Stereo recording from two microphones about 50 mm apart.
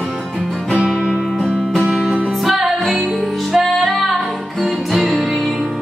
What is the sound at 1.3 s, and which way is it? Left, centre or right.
Music, centre.